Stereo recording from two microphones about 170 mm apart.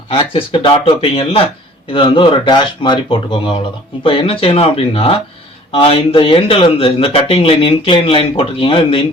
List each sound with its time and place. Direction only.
0.1 s speech: 30° left (ahead or behind)